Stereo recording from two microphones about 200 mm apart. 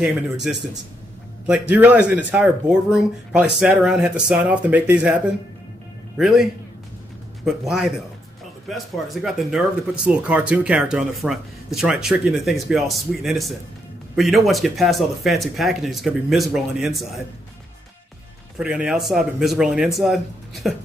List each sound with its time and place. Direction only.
0.0 s speech: centre (ahead or behind)
18.6 s speech: 5° right (ahead or behind)